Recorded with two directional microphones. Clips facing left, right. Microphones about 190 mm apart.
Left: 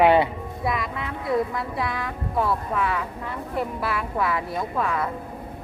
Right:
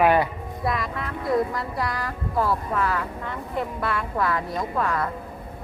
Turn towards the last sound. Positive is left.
turn(degrees=5)  # may be behind; listen again after turning